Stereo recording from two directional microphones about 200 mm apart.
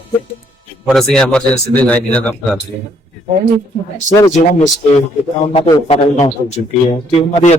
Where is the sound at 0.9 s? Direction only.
Centre (ahead or behind).